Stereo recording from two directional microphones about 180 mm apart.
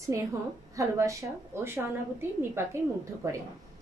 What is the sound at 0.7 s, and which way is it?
A woman's voice, 15° right (ahead or behind).